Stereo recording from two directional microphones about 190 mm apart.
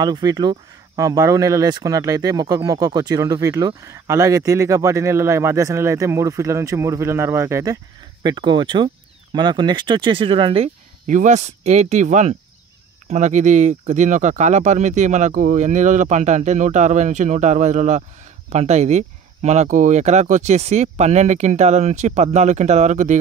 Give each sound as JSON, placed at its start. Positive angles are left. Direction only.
{"t": 0.0, "sound": "speech", "side_deg": -20}